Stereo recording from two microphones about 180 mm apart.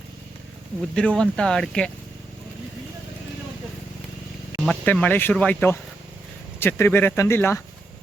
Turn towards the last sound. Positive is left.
turn(degrees=15)  # may be behind; listen again after turning